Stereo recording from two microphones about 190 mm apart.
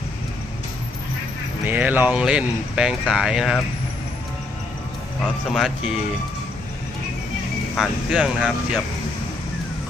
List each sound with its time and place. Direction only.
1.6 s speech: 10° right (ahead or behind)
5.5 s speech: centre (ahead or behind)
7.8 s speech: centre (ahead or behind)